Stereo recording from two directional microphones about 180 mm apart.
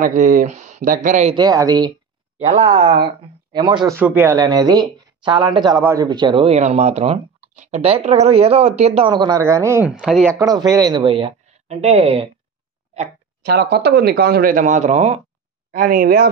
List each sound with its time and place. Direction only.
0.0 s speech: 45° right (ahead or behind)
1.3 s speech: 20° right (ahead or behind)
2.4 s speech: 35° right (ahead or behind)
2.8 s a man's voice: 60° right (ahead or behind)
3.5 s speech: 25° right (ahead or behind)
4.0 s speech: 10° right (ahead or behind)
9.8 s speech: centre (ahead or behind)
10.4 s speech: 20° right (ahead or behind)
13.5 s a man's voice: 65° right (ahead or behind); by 15.2 s 40° right (ahead or behind)
15.7 s speech: 50° right (ahead or behind)